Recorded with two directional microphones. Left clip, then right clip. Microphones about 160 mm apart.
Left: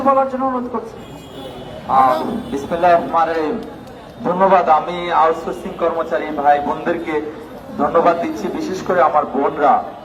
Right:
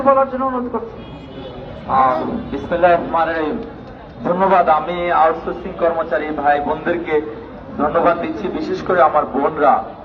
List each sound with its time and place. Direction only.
0.0 s a man's voice: 25° left (ahead or behind)
1.9 s a man's voice: 30° left (ahead or behind)